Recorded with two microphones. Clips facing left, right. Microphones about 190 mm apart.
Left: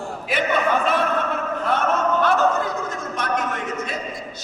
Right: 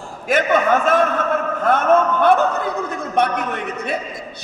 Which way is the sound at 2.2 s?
60° right (ahead or behind).